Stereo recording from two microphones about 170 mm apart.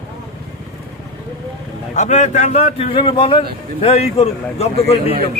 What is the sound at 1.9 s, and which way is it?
A man's voice, 45° left (ahead or behind).